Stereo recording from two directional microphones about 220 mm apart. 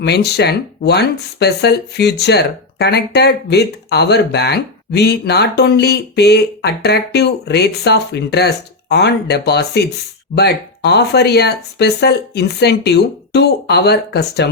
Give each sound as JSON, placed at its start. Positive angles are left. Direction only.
{"t": 0.0, "sound": "speech", "side_deg": 50}